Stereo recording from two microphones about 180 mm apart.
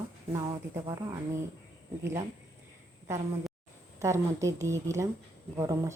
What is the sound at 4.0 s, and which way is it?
Speech, 15° right (ahead or behind).